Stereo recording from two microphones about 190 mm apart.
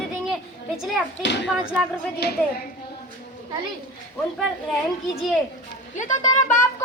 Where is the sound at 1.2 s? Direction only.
65° left (ahead or behind).